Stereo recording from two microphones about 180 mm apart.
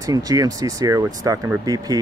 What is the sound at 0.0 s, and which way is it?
Speech, 20° right (ahead or behind).